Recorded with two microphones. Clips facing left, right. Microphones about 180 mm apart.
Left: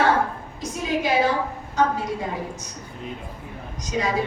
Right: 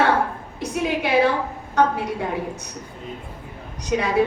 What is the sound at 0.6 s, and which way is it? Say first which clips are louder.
A woman's voice: right 2 dB; 60° right (ahead or behind).